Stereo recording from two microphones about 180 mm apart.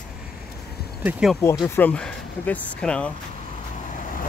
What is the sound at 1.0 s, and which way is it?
Speech, 5° right (ahead or behind).